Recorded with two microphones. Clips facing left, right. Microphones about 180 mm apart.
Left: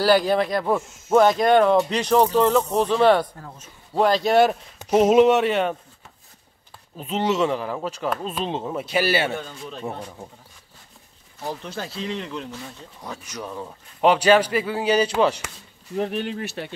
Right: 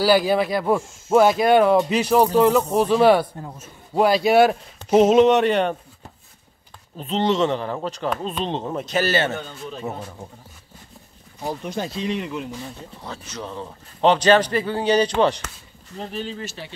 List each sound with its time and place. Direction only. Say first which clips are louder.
0.0 s speech: right 1 dB; 5° right (ahead or behind)
4.9 s speech: right 1 dB; 5° left (ahead or behind)
7.0 s a man's voice: right 2 dB; 5° left (ahead or behind)
9.7 s speech: right 2 dB; centre (ahead or behind)
11.3 s speech: right 3 dB; 15° right (ahead or behind)
13.0 s a man's voice: even; 10° left (ahead or behind)
16.0 s speech: left 4 dB; 65° left (ahead or behind)